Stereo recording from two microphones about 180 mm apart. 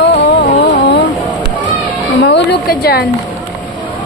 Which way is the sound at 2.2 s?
70° left (ahead or behind).